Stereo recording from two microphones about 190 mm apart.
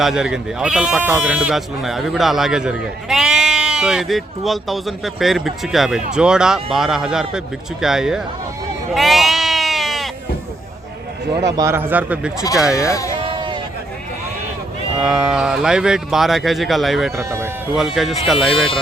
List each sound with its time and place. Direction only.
0.0 s speech: 5° right (ahead or behind)
9.0 s sheep: centre (ahead or behind)
11.4 s speech: 15° right (ahead or behind); by 12.9 s centre (ahead or behind)
13.2 s a sound: 25° right (ahead or behind)
15.0 s speech: 5° right (ahead or behind)
17.2 s speech: 15° right (ahead or behind)
17.7 s speech: centre (ahead or behind)